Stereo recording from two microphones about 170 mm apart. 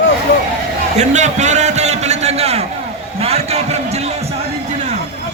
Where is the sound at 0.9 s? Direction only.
45° right (ahead or behind).